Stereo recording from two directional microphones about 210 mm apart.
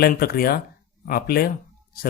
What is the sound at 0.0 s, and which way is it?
Speech, 45° left (ahead or behind).